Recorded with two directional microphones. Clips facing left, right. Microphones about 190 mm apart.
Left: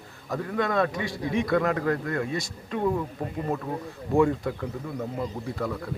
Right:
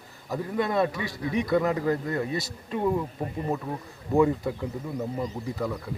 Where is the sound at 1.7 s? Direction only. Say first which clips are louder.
Even; 20° right (ahead or behind).